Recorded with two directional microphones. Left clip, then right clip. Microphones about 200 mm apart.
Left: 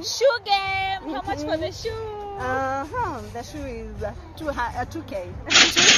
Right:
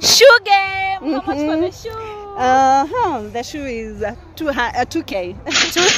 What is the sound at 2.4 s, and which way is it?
Speech, 60° right (ahead or behind).